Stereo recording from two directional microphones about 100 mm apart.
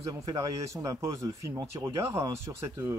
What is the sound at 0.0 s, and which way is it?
Speech, 40° right (ahead or behind).